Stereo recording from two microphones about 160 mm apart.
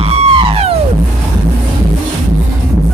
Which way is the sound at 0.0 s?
35° right (ahead or behind).